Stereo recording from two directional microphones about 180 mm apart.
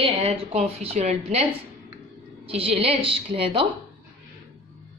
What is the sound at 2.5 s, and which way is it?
A woman's voice, 30° right (ahead or behind).